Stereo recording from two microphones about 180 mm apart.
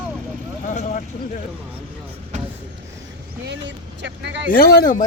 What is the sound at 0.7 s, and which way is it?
Speech, 45° left (ahead or behind).